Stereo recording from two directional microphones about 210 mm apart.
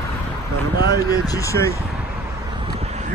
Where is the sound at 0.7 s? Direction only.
15° left (ahead or behind).